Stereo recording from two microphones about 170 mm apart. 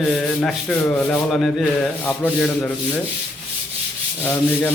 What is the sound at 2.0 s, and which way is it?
Sanding, 10° left (ahead or behind).